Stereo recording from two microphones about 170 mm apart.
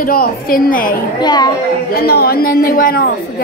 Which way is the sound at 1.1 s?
25° left (ahead or behind).